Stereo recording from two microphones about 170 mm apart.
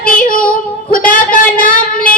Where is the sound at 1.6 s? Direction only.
55° left (ahead or behind).